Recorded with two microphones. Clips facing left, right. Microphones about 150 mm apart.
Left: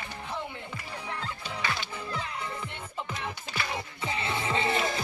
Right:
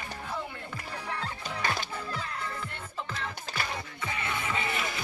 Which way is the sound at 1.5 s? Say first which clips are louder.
Right 2 dB; 45° right (ahead or behind).